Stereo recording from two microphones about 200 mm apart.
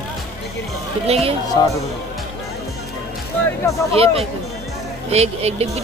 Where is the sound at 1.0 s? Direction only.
30° right (ahead or behind).